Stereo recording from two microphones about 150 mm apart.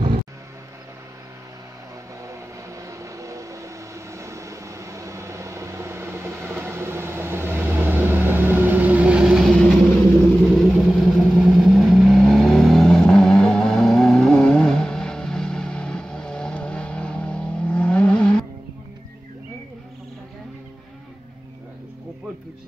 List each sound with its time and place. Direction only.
2.2 s vehicle: 20° right (ahead or behind); by 18.3 s 5° left (ahead or behind)